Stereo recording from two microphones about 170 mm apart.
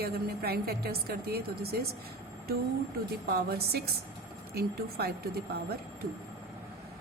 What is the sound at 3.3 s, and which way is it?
A woman's voice, 65° right (ahead or behind).